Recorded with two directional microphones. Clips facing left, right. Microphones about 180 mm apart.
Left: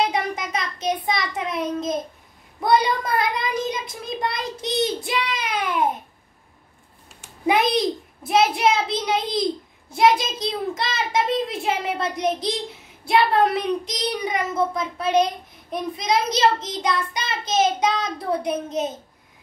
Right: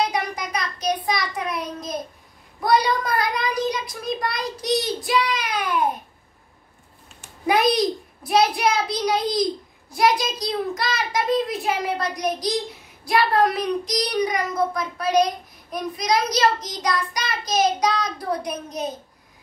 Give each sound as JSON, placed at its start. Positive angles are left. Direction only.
{"t": 0.1, "sound": "child singing", "side_deg": 25}
{"t": 2.6, "sound": "a child's voice", "side_deg": 25}
{"t": 7.4, "sound": "a child's voice", "side_deg": 25}